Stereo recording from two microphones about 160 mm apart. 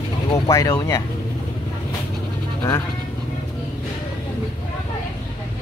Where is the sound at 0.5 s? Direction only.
20° left (ahead or behind).